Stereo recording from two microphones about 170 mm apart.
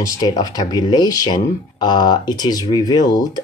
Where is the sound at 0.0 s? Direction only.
25° left (ahead or behind).